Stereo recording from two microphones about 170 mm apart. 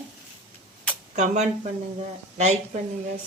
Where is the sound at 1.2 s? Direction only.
45° right (ahead or behind).